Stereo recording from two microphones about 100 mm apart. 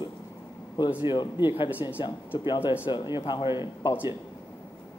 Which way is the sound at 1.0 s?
50° left (ahead or behind).